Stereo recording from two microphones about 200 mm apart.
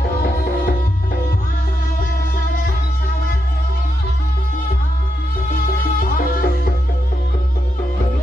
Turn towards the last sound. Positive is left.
turn(degrees=45)  # may be behind; listen again after turning